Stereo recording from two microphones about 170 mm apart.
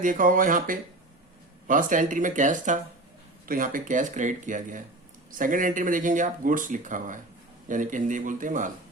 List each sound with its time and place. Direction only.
0.0 s speech: 50° right (ahead or behind)